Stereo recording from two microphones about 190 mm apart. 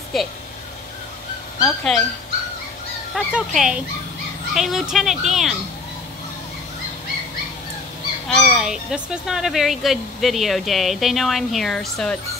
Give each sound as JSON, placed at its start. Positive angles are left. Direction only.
{"t": 0.1, "sound": "speech", "side_deg": 0}
{"t": 1.6, "sound": "speech", "side_deg": 0}
{"t": 3.2, "sound": "speech", "side_deg": 0}
{"t": 8.3, "sound": "speech", "side_deg": 0}